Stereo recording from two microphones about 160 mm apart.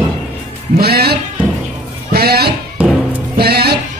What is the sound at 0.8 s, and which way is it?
Music, 80° right.